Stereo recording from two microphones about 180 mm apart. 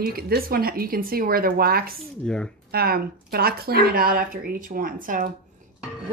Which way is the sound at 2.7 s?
60° right (ahead or behind).